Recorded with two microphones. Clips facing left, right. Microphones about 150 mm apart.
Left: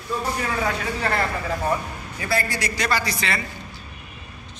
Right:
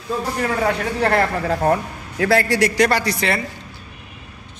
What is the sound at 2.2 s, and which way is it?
A man's voice, 85° right.